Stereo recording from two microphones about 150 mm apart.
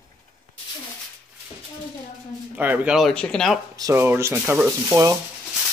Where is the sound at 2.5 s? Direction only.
10° right (ahead or behind).